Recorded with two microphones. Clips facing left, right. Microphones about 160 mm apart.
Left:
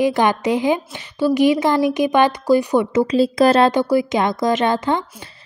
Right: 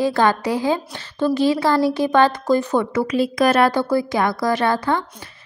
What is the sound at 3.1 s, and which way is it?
Speech, 30° left (ahead or behind).